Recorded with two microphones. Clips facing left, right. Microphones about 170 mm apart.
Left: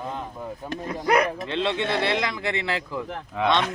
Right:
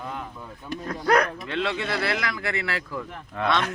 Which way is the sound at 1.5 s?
25° left (ahead or behind).